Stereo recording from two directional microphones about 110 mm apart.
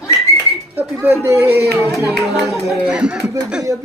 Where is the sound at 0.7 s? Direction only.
20° right (ahead or behind).